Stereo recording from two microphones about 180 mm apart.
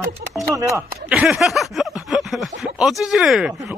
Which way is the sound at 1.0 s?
5° right (ahead or behind).